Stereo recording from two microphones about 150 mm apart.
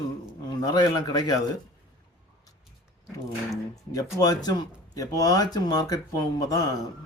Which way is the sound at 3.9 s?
25° left (ahead or behind).